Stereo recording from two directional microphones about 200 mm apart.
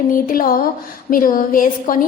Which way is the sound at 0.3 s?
45° left (ahead or behind).